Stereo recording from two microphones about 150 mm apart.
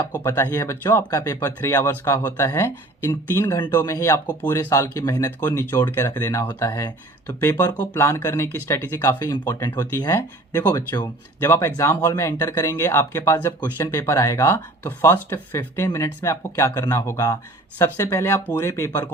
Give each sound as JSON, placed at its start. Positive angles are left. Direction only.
{"t": 0.1, "sound": "speech", "side_deg": 20}